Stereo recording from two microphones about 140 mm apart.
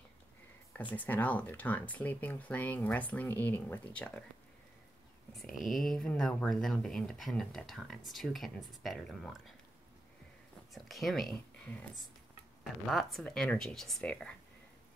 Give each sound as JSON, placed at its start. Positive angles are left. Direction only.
{"t": 0.9, "sound": "speech", "side_deg": 10}
{"t": 5.3, "sound": "speech", "side_deg": 0}
{"t": 10.7, "sound": "speech", "side_deg": 0}
{"t": 12.8, "sound": "speech", "side_deg": 0}